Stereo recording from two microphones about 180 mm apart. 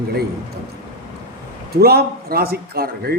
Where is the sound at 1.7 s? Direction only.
60° right (ahead or behind).